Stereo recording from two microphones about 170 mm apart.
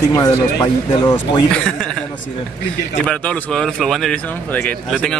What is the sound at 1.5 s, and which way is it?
Speech, 5° left (ahead or behind).